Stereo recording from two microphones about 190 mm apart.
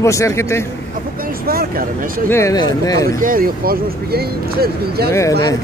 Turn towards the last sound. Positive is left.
turn(degrees=20)  # may be behind; listen again after turning